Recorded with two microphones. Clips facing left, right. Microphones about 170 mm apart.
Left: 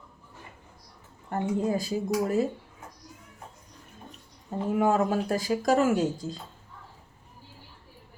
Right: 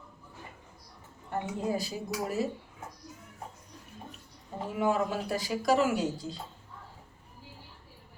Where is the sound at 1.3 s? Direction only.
50° left (ahead or behind).